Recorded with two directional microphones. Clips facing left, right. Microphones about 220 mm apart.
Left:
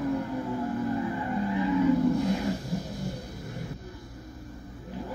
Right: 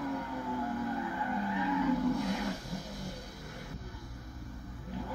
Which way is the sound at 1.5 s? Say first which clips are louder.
Left 7 dB; 30° left (ahead or behind).